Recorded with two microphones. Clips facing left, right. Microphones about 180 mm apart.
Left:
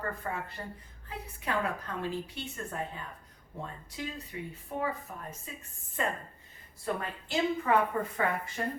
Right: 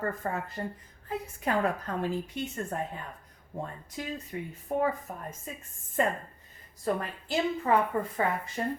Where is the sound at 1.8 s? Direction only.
45° right (ahead or behind).